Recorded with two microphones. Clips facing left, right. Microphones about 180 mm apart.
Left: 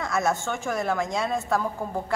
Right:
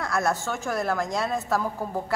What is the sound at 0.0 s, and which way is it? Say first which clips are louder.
A woman's voice: even; centre (ahead or behind).